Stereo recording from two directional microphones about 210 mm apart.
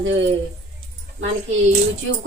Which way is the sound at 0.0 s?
60° right (ahead or behind).